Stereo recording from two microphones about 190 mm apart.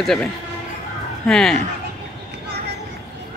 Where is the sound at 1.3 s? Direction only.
Centre (ahead or behind).